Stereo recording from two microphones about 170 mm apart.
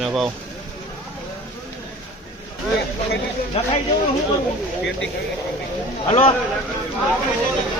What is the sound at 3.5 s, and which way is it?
Speech, 35° left (ahead or behind).